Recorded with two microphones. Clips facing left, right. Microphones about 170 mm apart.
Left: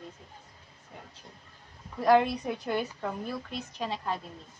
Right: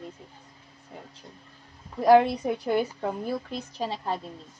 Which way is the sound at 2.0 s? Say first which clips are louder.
Right 5 dB; 25° right (ahead or behind).